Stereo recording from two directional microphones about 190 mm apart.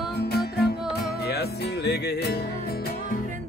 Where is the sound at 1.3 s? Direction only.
60° left (ahead or behind).